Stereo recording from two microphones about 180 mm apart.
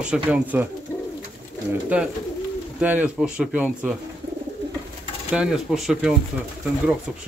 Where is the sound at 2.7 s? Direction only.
10° right (ahead or behind).